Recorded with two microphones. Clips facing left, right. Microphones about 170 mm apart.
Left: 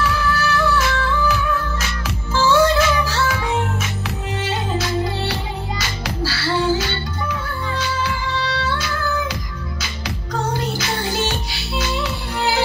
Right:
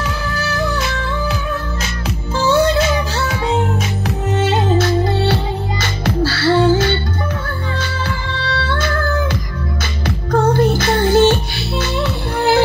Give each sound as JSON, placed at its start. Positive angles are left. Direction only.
{"t": 0.0, "sound": "music", "side_deg": -30}
{"t": 4.5, "sound": "music", "side_deg": -55}